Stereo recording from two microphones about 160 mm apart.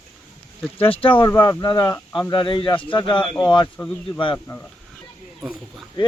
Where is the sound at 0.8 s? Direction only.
35° left (ahead or behind); by 2.1 s 15° left (ahead or behind).